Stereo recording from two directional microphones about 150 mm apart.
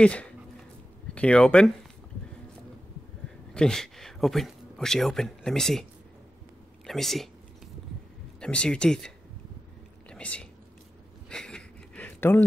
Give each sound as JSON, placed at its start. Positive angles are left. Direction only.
{"t": 0.0, "sound": "speech", "side_deg": 10}
{"t": 3.5, "sound": "speech", "side_deg": 5}
{"t": 6.9, "sound": "speech", "side_deg": 0}
{"t": 8.4, "sound": "speech", "side_deg": 5}
{"t": 10.0, "sound": "whispering", "side_deg": 5}
{"t": 11.2, "sound": "a sound", "side_deg": 5}